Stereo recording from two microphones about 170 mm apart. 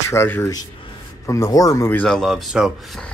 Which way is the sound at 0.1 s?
15° left (ahead or behind).